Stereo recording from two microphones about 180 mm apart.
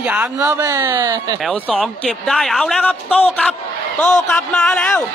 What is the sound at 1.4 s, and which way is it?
A man's voice, 5° left (ahead or behind).